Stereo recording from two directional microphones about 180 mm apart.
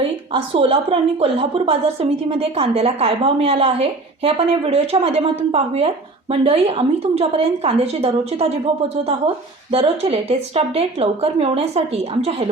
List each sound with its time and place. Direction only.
0.3 s a woman's voice: 30° right (ahead or behind)